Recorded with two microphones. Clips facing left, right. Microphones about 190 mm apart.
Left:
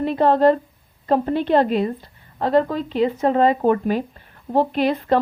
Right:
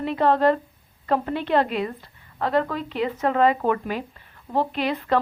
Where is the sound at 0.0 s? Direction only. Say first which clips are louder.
Left 4 dB; 40° left (ahead or behind).